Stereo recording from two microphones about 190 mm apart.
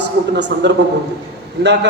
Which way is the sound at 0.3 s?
65° right (ahead or behind).